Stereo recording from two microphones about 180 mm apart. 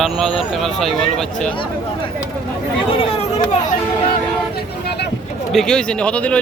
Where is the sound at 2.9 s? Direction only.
30° left (ahead or behind).